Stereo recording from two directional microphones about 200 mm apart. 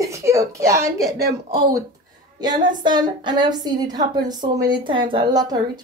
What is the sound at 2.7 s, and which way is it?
A woman's voice, 20° right (ahead or behind).